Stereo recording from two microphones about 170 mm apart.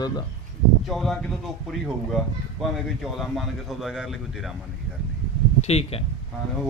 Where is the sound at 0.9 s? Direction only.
Centre (ahead or behind).